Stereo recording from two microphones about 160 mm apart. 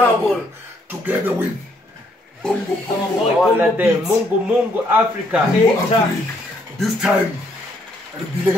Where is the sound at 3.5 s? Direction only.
10° right (ahead or behind).